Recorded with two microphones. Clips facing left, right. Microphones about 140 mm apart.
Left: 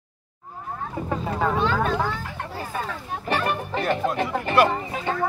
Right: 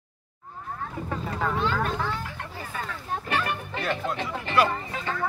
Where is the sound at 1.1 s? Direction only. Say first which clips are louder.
Left 5 dB; 35° left (ahead or behind).